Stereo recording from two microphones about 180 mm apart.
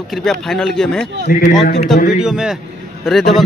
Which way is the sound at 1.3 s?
55° left (ahead or behind).